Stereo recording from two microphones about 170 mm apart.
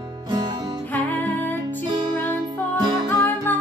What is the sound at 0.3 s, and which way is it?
Music, 25° right (ahead or behind).